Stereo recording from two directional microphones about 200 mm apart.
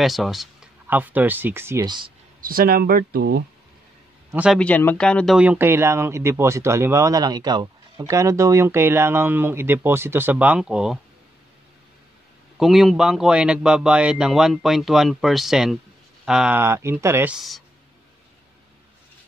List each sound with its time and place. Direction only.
0.0 s speech: centre (ahead or behind); by 2.1 s 20° right (ahead or behind)
2.4 s speech: 45° right (ahead or behind)
4.3 s a man's voice: 5° right (ahead or behind)
4.6 s speech: 5° left (ahead or behind)
12.5 s speech: centre (ahead or behind)